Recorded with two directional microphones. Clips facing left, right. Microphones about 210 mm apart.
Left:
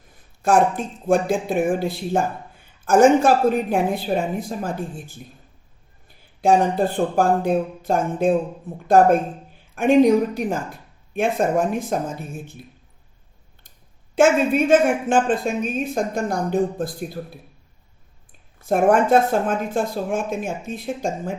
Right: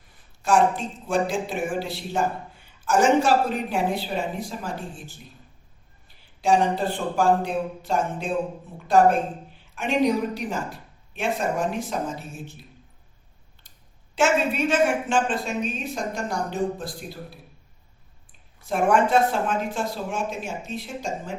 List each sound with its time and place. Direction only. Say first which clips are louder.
0.4 s speech: left 3 dB; 55° left (ahead or behind)
6.4 s speech: left 4 dB; 55° left (ahead or behind)
9.7 s speech: left 8 dB; 55° left (ahead or behind)
14.2 s speech: left 6 dB; 55° left (ahead or behind)
18.6 s speech: left 4 dB; 50° left (ahead or behind)